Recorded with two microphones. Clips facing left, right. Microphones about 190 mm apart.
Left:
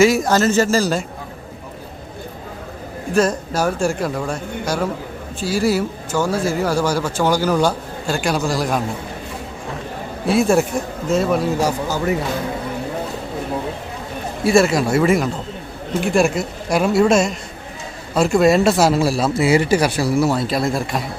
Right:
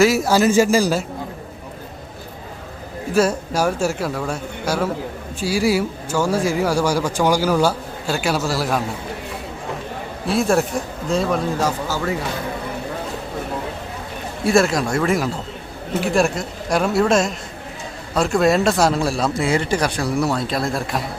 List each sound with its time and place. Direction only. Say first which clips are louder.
0.0 s speech: left 1 dB; 5° right (ahead or behind)
3.1 s speech: even; 10° right (ahead or behind)
10.2 s a man's voice: left 3 dB; centre (ahead or behind)
11.9 s speech: left 3 dB; 20° left (ahead or behind)
14.4 s a man's voice: left 2 dB; centre (ahead or behind)